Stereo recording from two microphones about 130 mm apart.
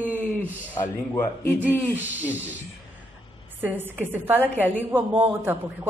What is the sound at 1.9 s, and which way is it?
Speech, 15° right (ahead or behind).